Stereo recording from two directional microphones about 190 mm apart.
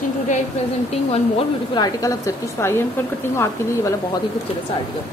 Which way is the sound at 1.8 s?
15° left (ahead or behind).